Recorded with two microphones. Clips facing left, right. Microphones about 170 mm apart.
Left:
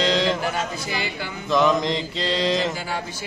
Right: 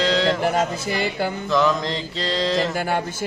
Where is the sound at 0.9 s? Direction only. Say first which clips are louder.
Right 5 dB; 50° right (ahead or behind).